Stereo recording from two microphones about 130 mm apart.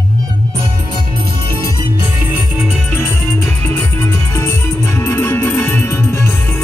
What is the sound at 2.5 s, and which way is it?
Music, centre (ahead or behind).